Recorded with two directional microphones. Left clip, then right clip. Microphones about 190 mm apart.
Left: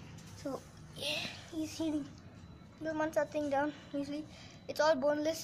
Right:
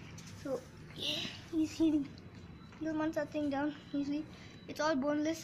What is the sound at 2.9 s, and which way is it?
Speech, 10° left (ahead or behind).